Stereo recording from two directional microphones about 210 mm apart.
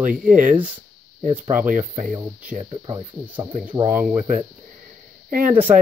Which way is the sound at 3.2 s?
10° right (ahead or behind).